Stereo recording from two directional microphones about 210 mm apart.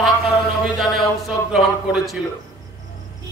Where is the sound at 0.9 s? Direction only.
Centre (ahead or behind).